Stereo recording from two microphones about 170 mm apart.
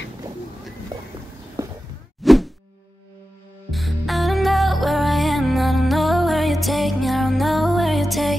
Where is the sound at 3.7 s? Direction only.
Centre (ahead or behind).